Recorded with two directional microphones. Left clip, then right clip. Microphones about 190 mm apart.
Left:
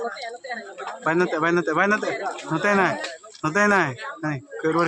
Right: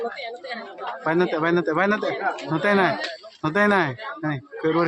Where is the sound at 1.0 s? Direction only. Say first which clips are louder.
Even; 5° left (ahead or behind).